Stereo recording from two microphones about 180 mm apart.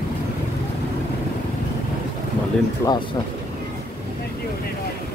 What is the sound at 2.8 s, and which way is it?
Speech, 15° left (ahead or behind).